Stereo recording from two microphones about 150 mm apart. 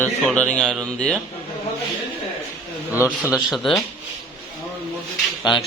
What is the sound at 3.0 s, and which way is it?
Speech, 10° right (ahead or behind).